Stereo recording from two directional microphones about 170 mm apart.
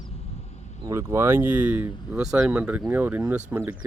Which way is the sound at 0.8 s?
15° right (ahead or behind).